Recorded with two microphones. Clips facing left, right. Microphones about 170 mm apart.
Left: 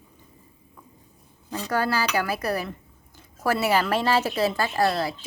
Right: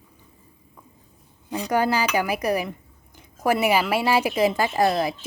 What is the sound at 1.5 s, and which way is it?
A woman's voice, 15° right (ahead or behind).